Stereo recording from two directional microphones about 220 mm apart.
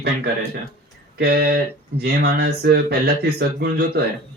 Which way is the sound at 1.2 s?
45° right (ahead or behind).